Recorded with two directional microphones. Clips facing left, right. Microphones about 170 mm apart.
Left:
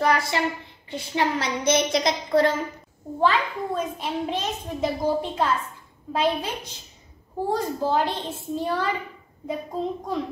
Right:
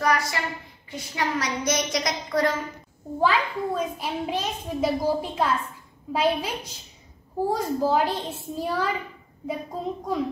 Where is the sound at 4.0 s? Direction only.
5° right (ahead or behind).